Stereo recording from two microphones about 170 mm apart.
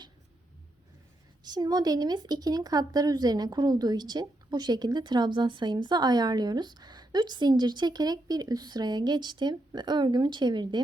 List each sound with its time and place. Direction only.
1.5 s a woman's voice: 25° right (ahead or behind)